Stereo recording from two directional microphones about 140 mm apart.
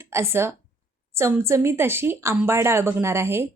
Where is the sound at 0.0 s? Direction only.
20° right (ahead or behind).